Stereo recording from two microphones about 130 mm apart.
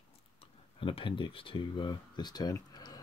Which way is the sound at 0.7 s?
40° left (ahead or behind).